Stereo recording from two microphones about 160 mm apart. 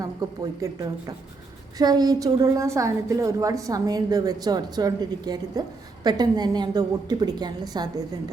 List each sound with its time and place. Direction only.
0.0 s a woman's voice: 25° right (ahead or behind)